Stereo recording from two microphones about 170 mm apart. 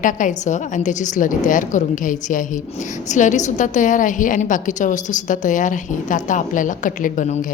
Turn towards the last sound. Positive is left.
turn(degrees=45)  # may be behind; listen again after turning